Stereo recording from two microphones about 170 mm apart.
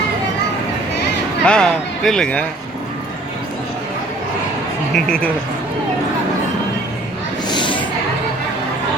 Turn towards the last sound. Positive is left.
turn(degrees=25)  # may be behind; listen again after turning